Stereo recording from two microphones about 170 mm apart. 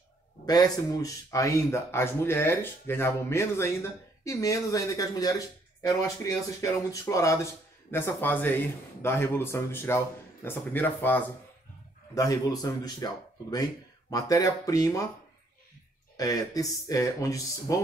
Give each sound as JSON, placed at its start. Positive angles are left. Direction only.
{"t": 0.5, "sound": "a man's voice", "side_deg": 20}
{"t": 16.2, "sound": "speech", "side_deg": 20}